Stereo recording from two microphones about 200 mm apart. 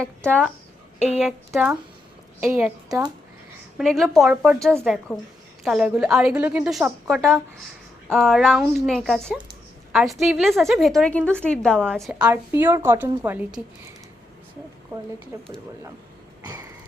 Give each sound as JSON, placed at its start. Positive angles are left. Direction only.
{"t": 0.9, "sound": "a woman's voice", "side_deg": 35}
{"t": 1.5, "sound": "a woman's voice", "side_deg": -10}
{"t": 3.8, "sound": "a woman's voice", "side_deg": 0}
{"t": 12.2, "sound": "a woman's voice", "side_deg": -15}
{"t": 15.3, "sound": "a woman's voice", "side_deg": -15}
{"t": 16.4, "sound": "a sound", "side_deg": -20}